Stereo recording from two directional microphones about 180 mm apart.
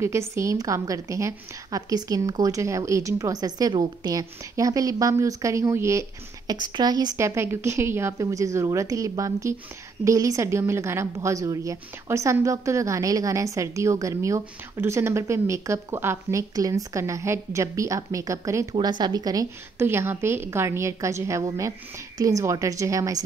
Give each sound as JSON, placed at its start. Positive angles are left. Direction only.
{"t": 0.0, "sound": "a woman's voice", "side_deg": -15}